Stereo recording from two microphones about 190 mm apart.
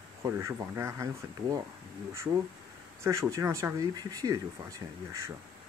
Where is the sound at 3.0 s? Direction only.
15° right (ahead or behind).